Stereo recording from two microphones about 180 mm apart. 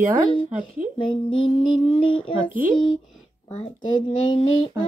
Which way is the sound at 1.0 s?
30° left (ahead or behind).